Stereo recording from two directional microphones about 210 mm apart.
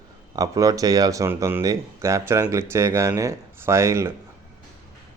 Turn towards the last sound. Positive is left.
turn(degrees=-15)  # may be behind; listen again after turning